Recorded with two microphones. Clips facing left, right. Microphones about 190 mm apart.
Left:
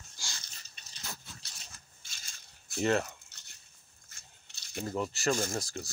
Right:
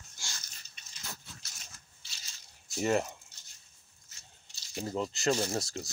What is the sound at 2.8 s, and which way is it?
Speech, 10° right (ahead or behind).